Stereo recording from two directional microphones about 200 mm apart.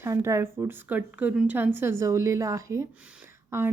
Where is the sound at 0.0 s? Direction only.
15° right (ahead or behind).